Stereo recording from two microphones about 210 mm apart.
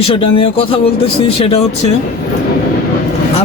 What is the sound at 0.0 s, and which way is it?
Speech, 25° left (ahead or behind).